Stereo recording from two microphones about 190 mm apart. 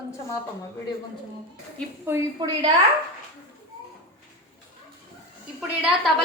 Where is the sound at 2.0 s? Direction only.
15° right (ahead or behind).